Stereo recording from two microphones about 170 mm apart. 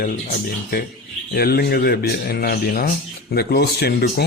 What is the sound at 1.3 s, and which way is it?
A man's voice, 65° left (ahead or behind).